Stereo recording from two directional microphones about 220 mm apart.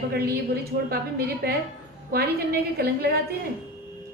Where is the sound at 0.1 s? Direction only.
45° right (ahead or behind).